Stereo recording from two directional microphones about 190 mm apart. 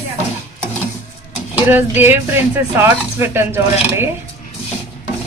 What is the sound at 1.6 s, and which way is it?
Speech, 10° right (ahead or behind).